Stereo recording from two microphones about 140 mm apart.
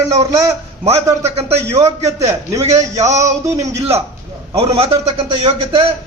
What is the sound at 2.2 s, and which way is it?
Speech, 20° right (ahead or behind).